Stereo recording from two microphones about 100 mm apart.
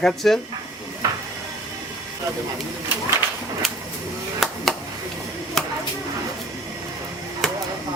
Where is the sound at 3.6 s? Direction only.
5° left (ahead or behind).